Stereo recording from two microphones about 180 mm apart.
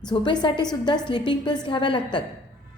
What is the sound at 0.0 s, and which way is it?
A woman's voice, 25° left (ahead or behind).